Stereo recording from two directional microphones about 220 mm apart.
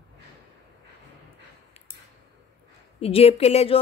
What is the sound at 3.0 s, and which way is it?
Speech, 25° left (ahead or behind).